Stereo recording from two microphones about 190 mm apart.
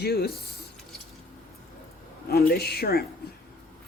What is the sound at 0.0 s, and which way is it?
Speech, 55° left (ahead or behind).